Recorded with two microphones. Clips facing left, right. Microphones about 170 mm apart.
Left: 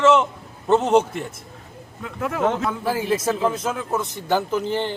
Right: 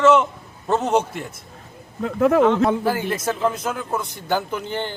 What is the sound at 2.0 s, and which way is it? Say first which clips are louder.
Speech: right 10 dB; 40° right (ahead or behind).